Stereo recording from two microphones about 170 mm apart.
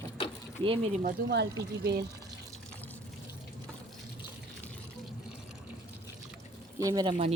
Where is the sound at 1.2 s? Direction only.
65° right (ahead or behind).